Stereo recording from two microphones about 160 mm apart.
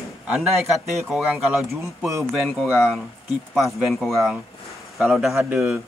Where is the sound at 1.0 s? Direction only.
5° right (ahead or behind).